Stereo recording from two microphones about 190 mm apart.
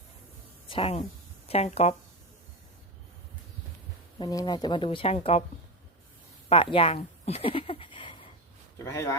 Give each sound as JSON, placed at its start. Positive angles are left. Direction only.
{"t": 0.7, "sound": "speech", "side_deg": 30}
{"t": 4.2, "sound": "speech", "side_deg": 20}
{"t": 6.5, "sound": "a sound", "side_deg": 30}
{"t": 8.8, "sound": "speech", "side_deg": 15}